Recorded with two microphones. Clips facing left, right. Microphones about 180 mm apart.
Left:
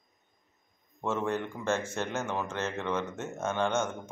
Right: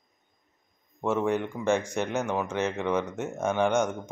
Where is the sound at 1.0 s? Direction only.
15° right (ahead or behind).